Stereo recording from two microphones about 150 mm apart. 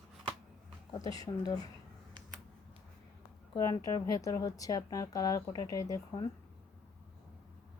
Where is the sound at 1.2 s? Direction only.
25° left (ahead or behind).